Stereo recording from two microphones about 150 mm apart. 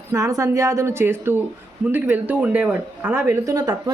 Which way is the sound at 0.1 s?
20° right (ahead or behind).